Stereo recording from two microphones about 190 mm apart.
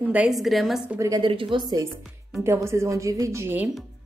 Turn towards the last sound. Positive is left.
turn(degrees=-10)  # may be behind; listen again after turning